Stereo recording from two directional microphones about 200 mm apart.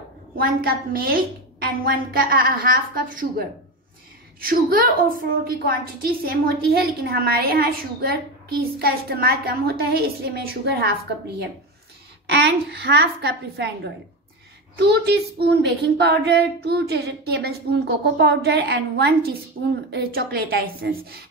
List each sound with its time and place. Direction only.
0.4 s a woman's voice: 50° right (ahead or behind)
12.3 s a woman's voice: 55° right (ahead or behind)